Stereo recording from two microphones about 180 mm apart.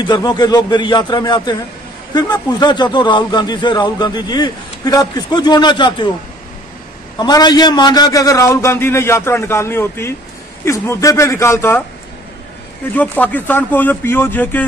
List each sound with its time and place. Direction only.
0.0 s speech: 25° left (ahead or behind)
7.2 s a man's voice: 25° left (ahead or behind)
12.9 s a man's voice: 10° left (ahead or behind)